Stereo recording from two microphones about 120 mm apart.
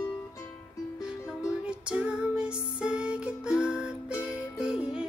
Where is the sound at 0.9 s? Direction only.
5° right (ahead or behind).